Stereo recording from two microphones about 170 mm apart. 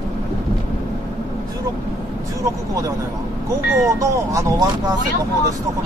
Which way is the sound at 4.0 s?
20° right (ahead or behind).